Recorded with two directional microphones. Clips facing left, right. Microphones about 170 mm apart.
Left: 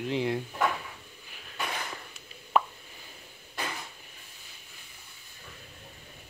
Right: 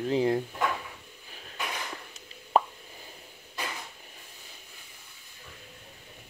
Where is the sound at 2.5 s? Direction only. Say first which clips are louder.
Right 2 dB; 35° right (ahead or behind).